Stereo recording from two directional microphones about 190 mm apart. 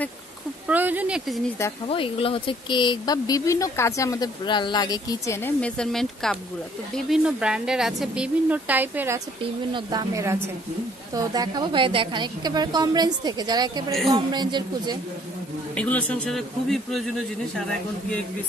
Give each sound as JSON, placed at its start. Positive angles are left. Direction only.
{"t": 0.7, "sound": "a sound", "side_deg": -10}
{"t": 1.9, "sound": "a woman's voice", "side_deg": 30}
{"t": 9.8, "sound": "a woman's voice", "side_deg": -20}
{"t": 15.7, "sound": "a woman's voice", "side_deg": 5}